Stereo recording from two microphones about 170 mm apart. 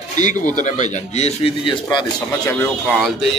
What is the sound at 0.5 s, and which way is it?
Speech, 45° left (ahead or behind).